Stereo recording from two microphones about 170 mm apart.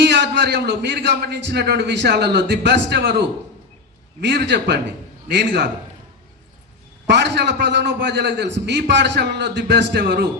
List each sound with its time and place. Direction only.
0.0 s a man's voice: 90° right
4.2 s a man's voice: 85° right
7.1 s a man's voice: 85° right; by 10.2 s 65° right (ahead or behind)